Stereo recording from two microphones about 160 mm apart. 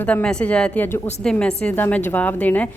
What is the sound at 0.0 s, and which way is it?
A woman's voice, 10° left (ahead or behind).